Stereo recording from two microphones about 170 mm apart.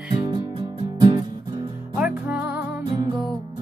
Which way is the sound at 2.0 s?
10° right (ahead or behind).